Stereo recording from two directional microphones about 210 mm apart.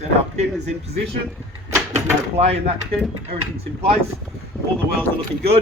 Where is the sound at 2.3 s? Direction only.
30° right (ahead or behind).